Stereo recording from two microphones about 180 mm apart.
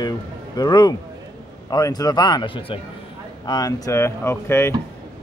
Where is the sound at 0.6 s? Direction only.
20° left (ahead or behind).